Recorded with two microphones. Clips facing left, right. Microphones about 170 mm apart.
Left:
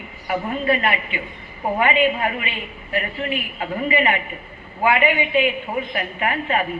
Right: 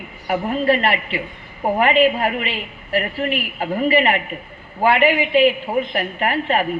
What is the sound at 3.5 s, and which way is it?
A woman's voice, 35° right (ahead or behind).